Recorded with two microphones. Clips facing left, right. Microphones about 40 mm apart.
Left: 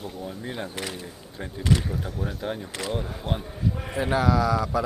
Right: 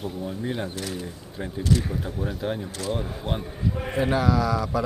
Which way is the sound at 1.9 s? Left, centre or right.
Centre.